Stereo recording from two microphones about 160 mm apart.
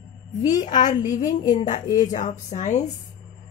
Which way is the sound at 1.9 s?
55° left (ahead or behind).